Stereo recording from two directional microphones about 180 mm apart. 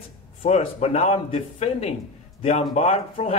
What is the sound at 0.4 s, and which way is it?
Speech, 40° left (ahead or behind).